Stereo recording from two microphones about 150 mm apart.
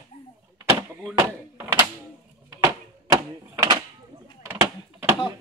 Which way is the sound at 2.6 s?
25° right (ahead or behind).